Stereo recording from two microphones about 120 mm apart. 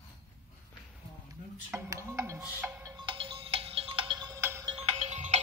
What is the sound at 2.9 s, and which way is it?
Music, 40° right (ahead or behind).